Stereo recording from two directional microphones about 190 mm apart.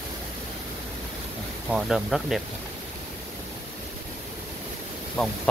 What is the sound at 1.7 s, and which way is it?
Speech, centre (ahead or behind).